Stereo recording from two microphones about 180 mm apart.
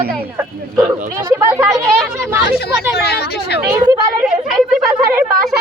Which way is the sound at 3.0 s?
60° left (ahead or behind).